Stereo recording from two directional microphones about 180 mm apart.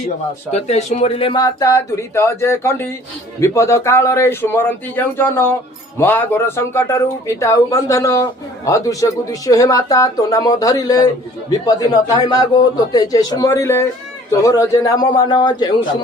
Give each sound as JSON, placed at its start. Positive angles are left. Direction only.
{"t": 0.5, "sound": "a man's voice", "side_deg": 40}